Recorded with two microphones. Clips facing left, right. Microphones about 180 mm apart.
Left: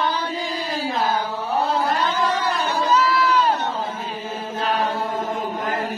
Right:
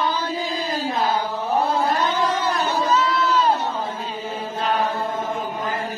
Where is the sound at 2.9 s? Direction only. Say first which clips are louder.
Left 3 dB; 25° right (ahead or behind).